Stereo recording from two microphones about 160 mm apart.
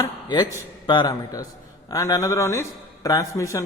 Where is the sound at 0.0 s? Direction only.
25° left (ahead or behind).